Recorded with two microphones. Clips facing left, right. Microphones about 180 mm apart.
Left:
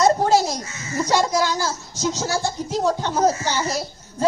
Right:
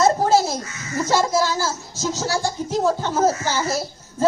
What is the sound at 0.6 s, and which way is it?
Baby laughter, 25° left (ahead or behind).